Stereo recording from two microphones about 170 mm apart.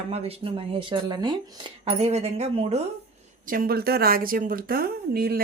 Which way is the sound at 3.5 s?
60° right (ahead or behind).